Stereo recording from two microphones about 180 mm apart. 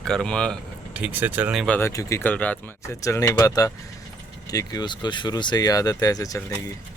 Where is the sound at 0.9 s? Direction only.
10° right (ahead or behind).